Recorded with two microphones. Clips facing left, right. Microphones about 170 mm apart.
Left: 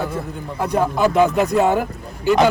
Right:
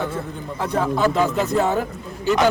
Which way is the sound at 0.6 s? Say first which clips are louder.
Left 2 dB; 15° left (ahead or behind).